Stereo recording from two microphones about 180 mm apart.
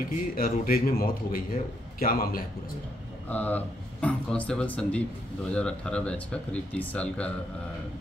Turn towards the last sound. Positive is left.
turn(degrees=5)  # may be behind; listen again after turning